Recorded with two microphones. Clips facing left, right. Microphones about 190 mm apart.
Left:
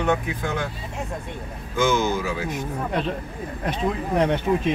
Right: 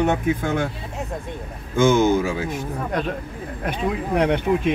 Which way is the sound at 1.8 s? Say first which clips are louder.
Right 5 dB; 50° right (ahead or behind).